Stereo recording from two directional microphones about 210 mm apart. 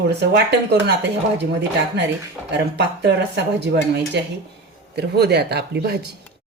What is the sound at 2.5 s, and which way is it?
Speech, 55° right (ahead or behind).